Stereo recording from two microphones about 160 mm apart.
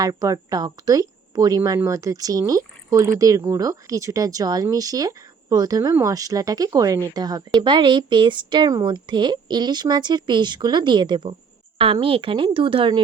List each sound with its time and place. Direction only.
0.0 s a woman's voice: 20° right (ahead or behind)